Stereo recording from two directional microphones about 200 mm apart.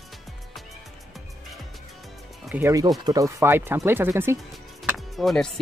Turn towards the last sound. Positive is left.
turn(degrees=0)  # may be behind; listen again after turning